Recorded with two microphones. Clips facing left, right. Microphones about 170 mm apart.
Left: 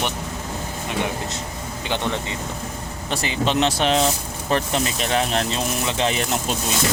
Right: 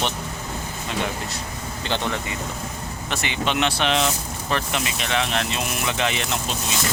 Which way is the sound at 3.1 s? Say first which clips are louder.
Left 3 dB; 35° left (ahead or behind).